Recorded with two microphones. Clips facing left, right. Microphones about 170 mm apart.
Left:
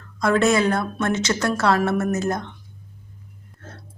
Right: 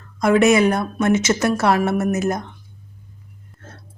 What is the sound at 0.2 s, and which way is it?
A woman's voice, 20° right (ahead or behind).